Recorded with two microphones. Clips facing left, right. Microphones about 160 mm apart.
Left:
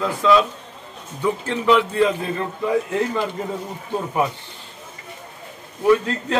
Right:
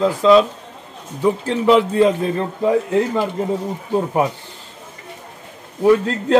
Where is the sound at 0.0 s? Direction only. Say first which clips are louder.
Right 5 dB; 30° right (ahead or behind).